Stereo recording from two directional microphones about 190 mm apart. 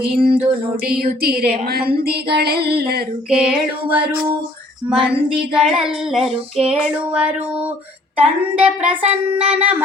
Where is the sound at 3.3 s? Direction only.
5° right (ahead or behind).